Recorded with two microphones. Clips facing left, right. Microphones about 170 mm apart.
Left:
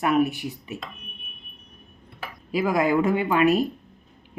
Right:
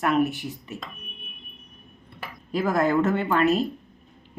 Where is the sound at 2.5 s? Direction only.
10° left (ahead or behind).